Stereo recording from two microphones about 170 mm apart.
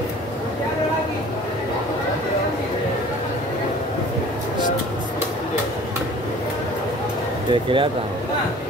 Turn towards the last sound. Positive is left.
turn(degrees=-30)  # may be behind; listen again after turning